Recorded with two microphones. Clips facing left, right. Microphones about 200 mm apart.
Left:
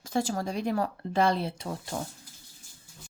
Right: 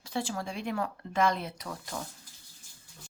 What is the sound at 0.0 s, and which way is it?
A woman's voice, 45° left (ahead or behind).